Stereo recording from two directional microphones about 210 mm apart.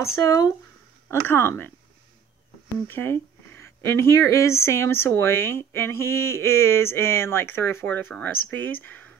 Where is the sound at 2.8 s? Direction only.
10° left (ahead or behind).